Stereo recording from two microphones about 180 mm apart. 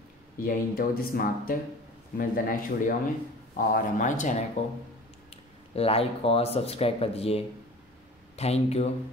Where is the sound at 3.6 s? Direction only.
50° left (ahead or behind).